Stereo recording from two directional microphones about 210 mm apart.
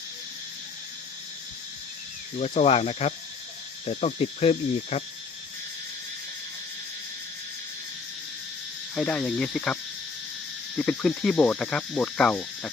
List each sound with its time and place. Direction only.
2.4 s cricket: 30° left (ahead or behind)
9.0 s speech: 5° left (ahead or behind)
10.8 s speech: 5° left (ahead or behind)